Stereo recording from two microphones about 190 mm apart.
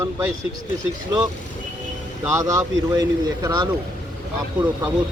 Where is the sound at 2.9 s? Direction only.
20° right (ahead or behind).